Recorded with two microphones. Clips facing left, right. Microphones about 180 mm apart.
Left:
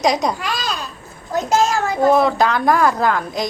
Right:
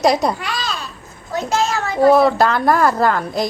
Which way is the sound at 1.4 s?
40° left (ahead or behind).